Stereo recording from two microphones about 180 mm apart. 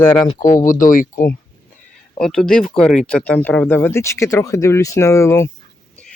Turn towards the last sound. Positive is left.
turn(degrees=15)  # may be behind; listen again after turning